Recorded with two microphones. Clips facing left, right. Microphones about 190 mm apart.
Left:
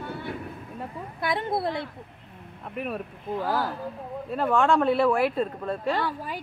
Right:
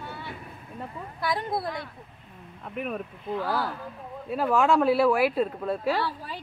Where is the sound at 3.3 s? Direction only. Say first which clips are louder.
Left 1 dB; 15° left (ahead or behind).